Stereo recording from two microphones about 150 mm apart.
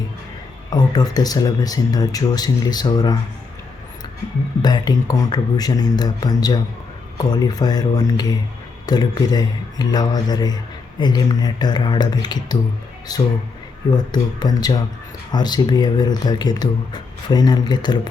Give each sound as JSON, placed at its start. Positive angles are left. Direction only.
{"t": 0.7, "sound": "speech", "side_deg": 25}
{"t": 4.6, "sound": "speech", "side_deg": 25}